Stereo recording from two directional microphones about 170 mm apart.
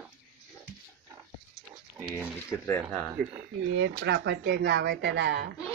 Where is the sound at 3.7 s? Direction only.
90° right.